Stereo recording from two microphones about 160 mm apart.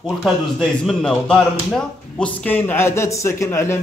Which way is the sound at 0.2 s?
Centre (ahead or behind).